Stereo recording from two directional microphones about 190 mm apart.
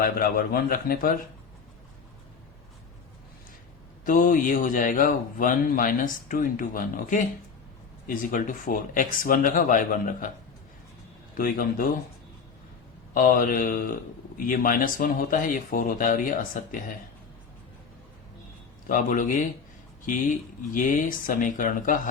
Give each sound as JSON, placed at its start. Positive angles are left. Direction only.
{"t": 0.0, "sound": "speech", "side_deg": 50}
{"t": 4.0, "sound": "speech", "side_deg": 45}
{"t": 11.3, "sound": "speech", "side_deg": 50}
{"t": 13.1, "sound": "speech", "side_deg": 45}
{"t": 18.9, "sound": "speech", "side_deg": 45}
{"t": 20.7, "sound": "speech", "side_deg": 45}